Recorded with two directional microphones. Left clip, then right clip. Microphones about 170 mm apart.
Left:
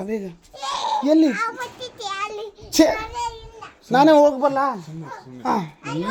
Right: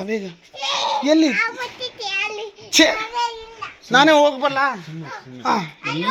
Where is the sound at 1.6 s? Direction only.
10° left (ahead or behind).